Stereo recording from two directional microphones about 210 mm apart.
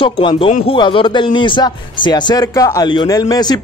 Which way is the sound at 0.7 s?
20° left (ahead or behind).